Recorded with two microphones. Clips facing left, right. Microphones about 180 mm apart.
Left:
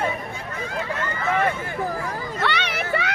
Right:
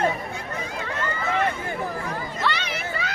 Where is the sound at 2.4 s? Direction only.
70° left (ahead or behind).